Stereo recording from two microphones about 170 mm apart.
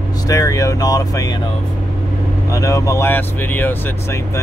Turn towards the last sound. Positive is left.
turn(degrees=10)  # may be behind; listen again after turning